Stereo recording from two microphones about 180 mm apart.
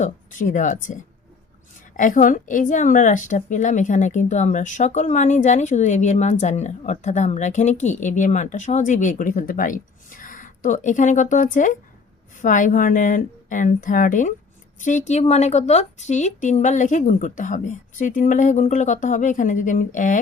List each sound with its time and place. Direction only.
0.0 s speech: 45° left (ahead or behind)
2.0 s speech: 45° left (ahead or behind)